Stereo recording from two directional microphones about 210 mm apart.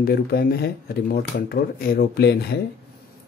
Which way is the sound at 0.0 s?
45° left (ahead or behind).